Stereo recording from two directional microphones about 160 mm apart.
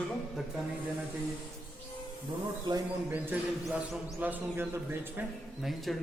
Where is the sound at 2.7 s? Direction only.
25° right (ahead or behind).